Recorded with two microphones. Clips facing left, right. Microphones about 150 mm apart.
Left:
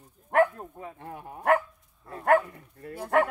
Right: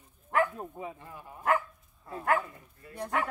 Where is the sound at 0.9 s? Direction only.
60° left (ahead or behind).